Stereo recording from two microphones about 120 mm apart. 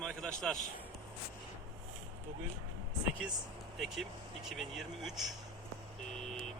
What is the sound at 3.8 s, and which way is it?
Speech, centre (ahead or behind).